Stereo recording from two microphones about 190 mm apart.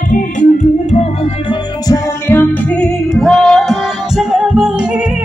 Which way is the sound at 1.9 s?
10° left (ahead or behind).